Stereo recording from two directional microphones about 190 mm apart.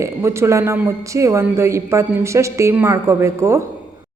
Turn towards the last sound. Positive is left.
turn(degrees=-15)  # may be behind; listen again after turning